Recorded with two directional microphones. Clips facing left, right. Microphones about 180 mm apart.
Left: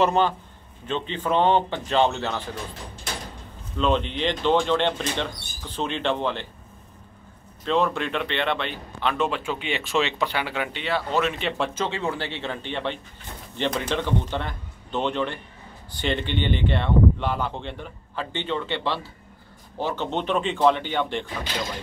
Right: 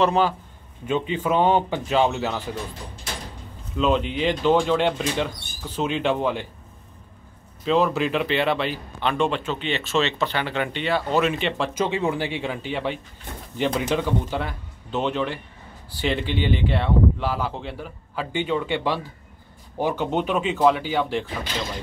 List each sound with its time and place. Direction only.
0.0 s a man's voice: centre (ahead or behind)
3.7 s speech: 5° right (ahead or behind)
7.6 s a man's voice: 5° right (ahead or behind)
11.7 s a man's voice: 15° right (ahead or behind)